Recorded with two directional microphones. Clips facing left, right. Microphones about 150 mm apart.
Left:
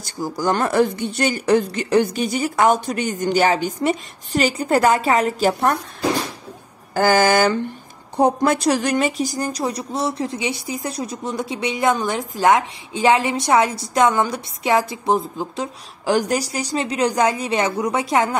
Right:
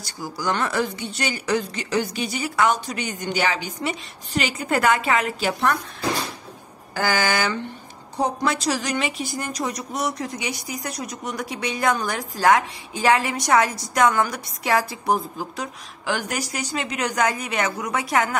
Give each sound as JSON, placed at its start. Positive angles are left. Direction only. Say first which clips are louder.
{"t": 0.2, "sound": "speech", "louder": "left 5 dB", "side_deg": 45}
{"t": 6.9, "sound": "speech", "louder": "left 7 dB", "side_deg": 45}